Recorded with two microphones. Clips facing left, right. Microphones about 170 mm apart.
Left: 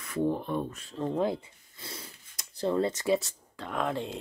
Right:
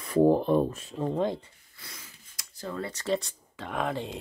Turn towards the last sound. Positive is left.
turn(degrees=0)  # may be behind; listen again after turning